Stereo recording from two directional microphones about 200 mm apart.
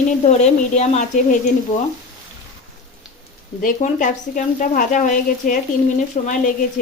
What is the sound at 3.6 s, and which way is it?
Speech, 40° left (ahead or behind).